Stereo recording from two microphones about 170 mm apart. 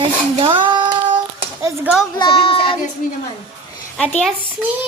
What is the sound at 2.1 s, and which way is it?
Speech, 30° left (ahead or behind).